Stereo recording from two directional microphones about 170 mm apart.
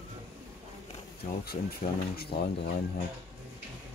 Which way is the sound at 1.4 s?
65° left (ahead or behind).